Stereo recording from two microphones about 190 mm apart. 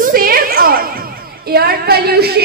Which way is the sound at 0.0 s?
50° right (ahead or behind).